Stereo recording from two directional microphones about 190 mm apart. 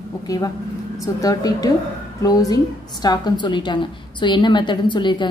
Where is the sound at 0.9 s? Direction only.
20° left (ahead or behind).